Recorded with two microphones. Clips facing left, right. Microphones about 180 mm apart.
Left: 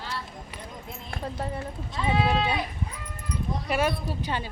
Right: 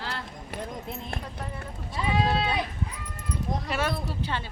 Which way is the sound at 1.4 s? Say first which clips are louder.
Left 5 dB; 30° left (ahead or behind).